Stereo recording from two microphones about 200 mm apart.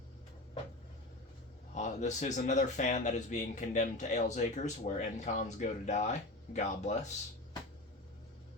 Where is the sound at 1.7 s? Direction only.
35° left (ahead or behind).